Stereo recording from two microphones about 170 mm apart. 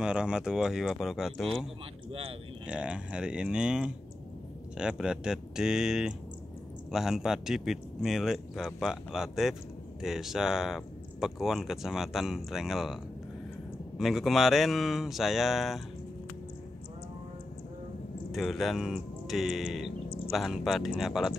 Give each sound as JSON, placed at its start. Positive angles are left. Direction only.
{"t": 0.0, "sound": "speech", "side_deg": -5}
{"t": 18.3, "sound": "speech", "side_deg": 0}